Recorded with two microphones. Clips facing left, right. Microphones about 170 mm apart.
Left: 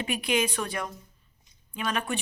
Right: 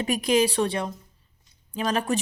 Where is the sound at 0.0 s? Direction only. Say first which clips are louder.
Right 6 dB; 40° right (ahead or behind).